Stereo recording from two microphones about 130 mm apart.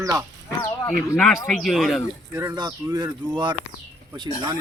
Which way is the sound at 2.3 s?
25° right (ahead or behind).